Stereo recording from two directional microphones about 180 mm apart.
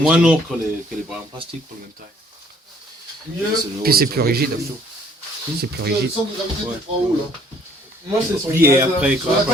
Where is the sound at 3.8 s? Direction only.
55° right (ahead or behind).